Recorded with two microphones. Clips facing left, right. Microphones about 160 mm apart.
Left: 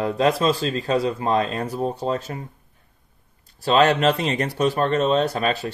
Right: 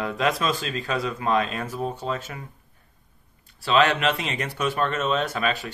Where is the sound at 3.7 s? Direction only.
35° left (ahead or behind).